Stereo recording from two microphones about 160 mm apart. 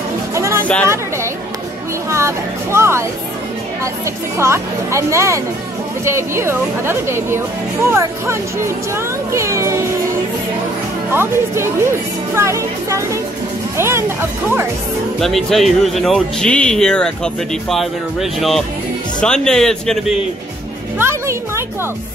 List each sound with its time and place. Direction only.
0.3 s music: 15° right (ahead or behind)
0.8 s chatter: 15° right (ahead or behind)
2.0 s speech: 20° right (ahead or behind)
11.1 s speech: 15° right (ahead or behind)
15.1 s speech: centre (ahead or behind)
21.0 s speech: 15° right (ahead or behind)